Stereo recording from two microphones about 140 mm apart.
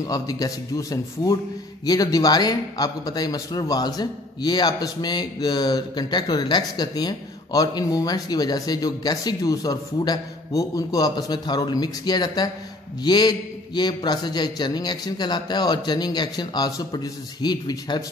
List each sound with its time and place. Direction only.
0.0 s a man's voice: 25° left (ahead or behind)